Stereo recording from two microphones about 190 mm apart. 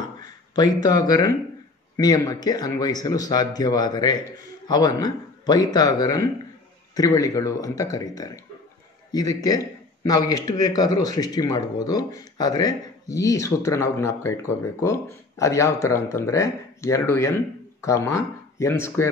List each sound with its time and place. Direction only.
0.2 s a man's voice: 20° left (ahead or behind)